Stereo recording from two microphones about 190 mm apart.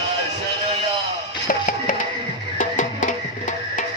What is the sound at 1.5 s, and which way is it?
Music, 45° left (ahead or behind).